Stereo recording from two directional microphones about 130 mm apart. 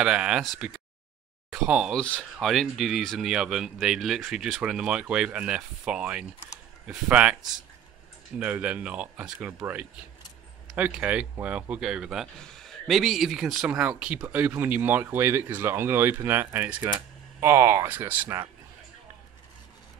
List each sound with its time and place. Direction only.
0.0 s speech: 5° right (ahead or behind)
2.0 s speech: 10° left (ahead or behind); by 18.4 s 15° right (ahead or behind)